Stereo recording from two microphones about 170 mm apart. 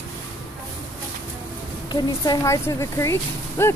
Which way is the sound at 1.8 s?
25° left (ahead or behind).